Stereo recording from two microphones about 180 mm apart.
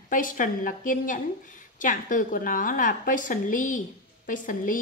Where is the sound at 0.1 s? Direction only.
50° left (ahead or behind).